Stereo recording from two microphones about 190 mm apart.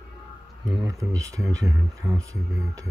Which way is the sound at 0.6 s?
15° right (ahead or behind).